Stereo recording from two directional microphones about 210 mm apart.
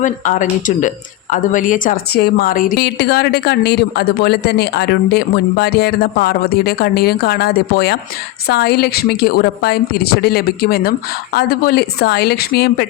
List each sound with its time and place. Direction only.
0.0 s a woman's voice: 35° left (ahead or behind)